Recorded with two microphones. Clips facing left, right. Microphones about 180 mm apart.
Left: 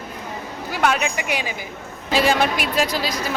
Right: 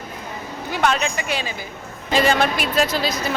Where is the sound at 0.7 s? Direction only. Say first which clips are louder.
Even; 5° left (ahead or behind).